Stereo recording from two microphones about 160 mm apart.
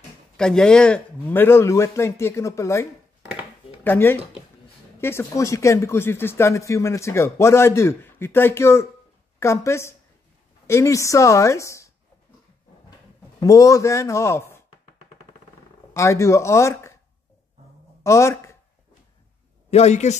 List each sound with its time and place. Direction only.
0.4 s a woman's voice: 5° left (ahead or behind)
13.4 s a woman's voice: 20° left (ahead or behind)
15.9 s speech: 20° left (ahead or behind)
18.0 s speech: 20° left (ahead or behind)
19.7 s speech: 45° left (ahead or behind)